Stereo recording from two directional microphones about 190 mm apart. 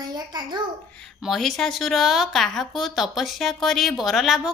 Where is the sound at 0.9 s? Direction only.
Centre (ahead or behind).